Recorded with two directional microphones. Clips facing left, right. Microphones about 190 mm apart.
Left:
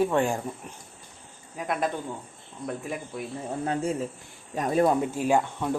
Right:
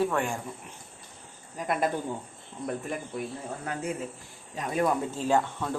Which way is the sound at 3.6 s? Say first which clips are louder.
Left 6 dB; 30° left (ahead or behind).